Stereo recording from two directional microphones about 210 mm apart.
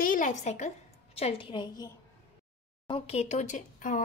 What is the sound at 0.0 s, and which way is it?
A woman's voice, 40° left (ahead or behind).